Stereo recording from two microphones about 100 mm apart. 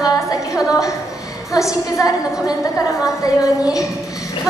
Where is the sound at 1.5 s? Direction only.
30° left (ahead or behind).